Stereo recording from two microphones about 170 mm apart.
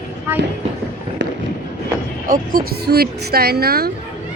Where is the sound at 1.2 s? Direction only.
90° right.